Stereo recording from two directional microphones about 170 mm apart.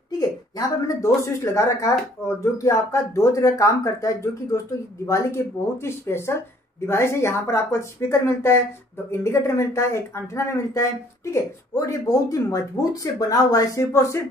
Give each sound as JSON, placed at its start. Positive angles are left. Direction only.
{"t": 0.2, "sound": "speech", "side_deg": 20}